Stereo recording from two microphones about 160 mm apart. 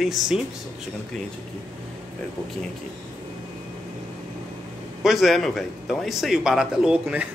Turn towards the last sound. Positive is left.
turn(degrees=-5)  # may be behind; listen again after turning